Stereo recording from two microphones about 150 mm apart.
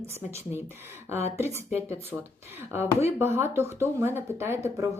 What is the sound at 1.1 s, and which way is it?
Speech, 15° right (ahead or behind).